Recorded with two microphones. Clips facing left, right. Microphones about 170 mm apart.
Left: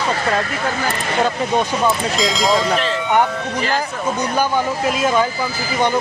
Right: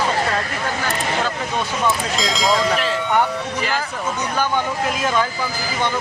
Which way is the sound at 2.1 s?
Centre (ahead or behind).